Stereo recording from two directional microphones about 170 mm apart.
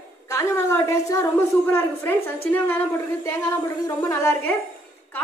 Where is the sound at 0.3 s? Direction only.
15° left (ahead or behind).